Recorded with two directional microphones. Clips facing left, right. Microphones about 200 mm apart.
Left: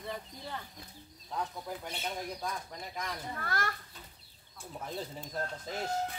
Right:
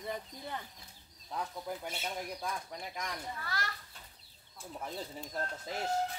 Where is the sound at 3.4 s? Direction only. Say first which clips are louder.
Left 7 dB; 50° left (ahead or behind).